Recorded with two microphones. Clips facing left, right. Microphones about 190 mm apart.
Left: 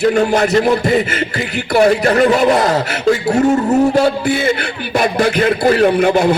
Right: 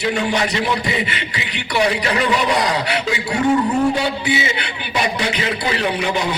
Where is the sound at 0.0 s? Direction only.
45° left (ahead or behind).